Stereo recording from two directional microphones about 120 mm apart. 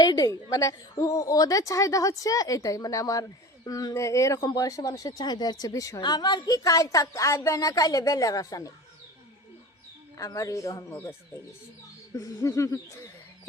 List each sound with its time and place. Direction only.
0.0 s a woman's voice: 35° left (ahead or behind)
10.2 s a woman's voice: 30° left (ahead or behind)
12.1 s a woman's voice: 30° left (ahead or behind)